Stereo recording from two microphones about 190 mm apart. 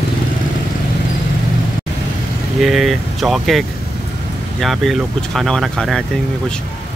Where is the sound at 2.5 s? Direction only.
Centre (ahead or behind).